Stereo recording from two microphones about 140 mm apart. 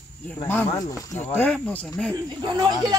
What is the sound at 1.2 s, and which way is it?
Speech, 15° left (ahead or behind).